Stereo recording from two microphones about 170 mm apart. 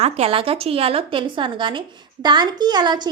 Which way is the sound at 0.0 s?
35° right (ahead or behind).